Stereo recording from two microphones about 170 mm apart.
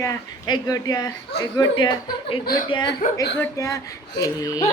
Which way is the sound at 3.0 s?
50° left (ahead or behind).